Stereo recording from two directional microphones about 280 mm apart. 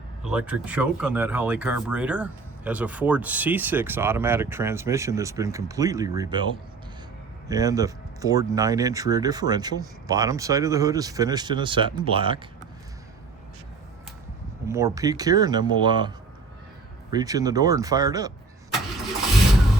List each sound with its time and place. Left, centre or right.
0.3 s speech: centre
14.7 s speech: centre